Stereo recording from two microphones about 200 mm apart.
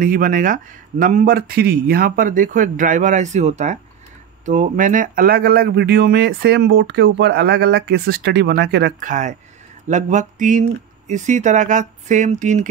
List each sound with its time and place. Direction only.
0.0 s a man's voice: 40° right (ahead or behind); by 8.9 s 60° right (ahead or behind)
9.0 s a man's voice: 40° right (ahead or behind)